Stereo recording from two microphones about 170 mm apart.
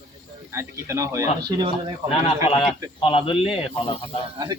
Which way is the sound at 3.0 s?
30° left (ahead or behind).